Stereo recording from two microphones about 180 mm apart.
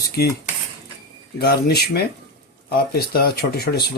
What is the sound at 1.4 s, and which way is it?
Speech, 65° left (ahead or behind).